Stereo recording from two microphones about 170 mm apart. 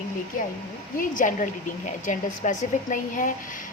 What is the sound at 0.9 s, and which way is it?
A woman's voice, 50° left (ahead or behind).